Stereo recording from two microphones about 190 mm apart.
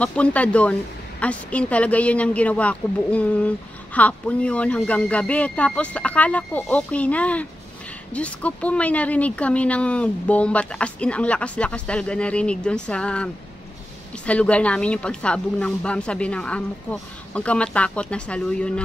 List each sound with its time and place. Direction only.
0.0 s a woman's voice: 5° left (ahead or behind)